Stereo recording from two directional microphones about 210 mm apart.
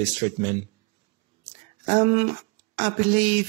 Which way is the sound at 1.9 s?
35° right (ahead or behind).